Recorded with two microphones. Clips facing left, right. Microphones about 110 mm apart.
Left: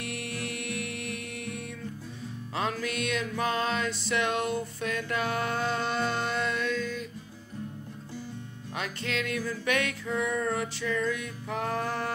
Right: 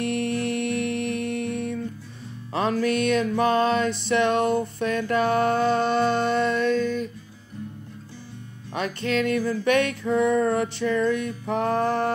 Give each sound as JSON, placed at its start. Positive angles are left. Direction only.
{"t": 0.0, "sound": "music", "side_deg": -50}
{"t": 8.7, "sound": "music", "side_deg": -45}